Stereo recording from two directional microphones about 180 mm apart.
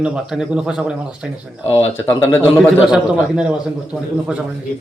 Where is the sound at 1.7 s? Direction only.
10° left (ahead or behind).